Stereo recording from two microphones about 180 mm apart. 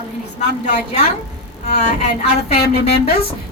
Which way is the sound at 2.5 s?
60° left (ahead or behind).